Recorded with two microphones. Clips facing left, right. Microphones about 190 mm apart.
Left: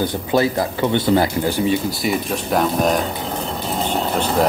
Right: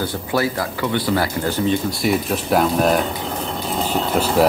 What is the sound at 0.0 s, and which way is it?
Speech, 20° left (ahead or behind).